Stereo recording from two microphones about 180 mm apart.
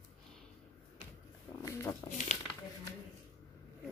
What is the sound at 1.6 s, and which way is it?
Dog, 15° left (ahead or behind).